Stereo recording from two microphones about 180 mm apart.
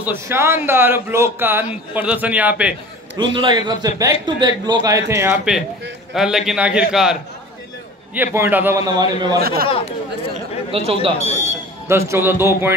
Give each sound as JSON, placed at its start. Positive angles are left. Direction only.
{"t": 0.0, "sound": "a man's voice", "side_deg": -10}
{"t": 3.2, "sound": "a man's voice", "side_deg": -25}
{"t": 5.5, "sound": "a man's voice", "side_deg": -5}
{"t": 9.4, "sound": "speech", "side_deg": -55}
{"t": 9.7, "sound": "speech", "side_deg": 30}
{"t": 10.7, "sound": "speech", "side_deg": -30}
{"t": 11.1, "sound": "speech", "side_deg": 40}
{"t": 12.1, "sound": "a man's voice", "side_deg": -15}